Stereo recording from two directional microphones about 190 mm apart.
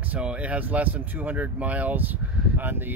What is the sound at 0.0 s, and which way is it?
Speech, 5° right (ahead or behind).